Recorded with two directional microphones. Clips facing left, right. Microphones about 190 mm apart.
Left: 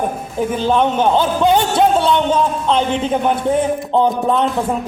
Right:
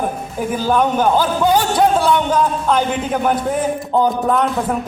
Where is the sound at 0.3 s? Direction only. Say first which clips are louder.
Left 1 dB; 25° left (ahead or behind).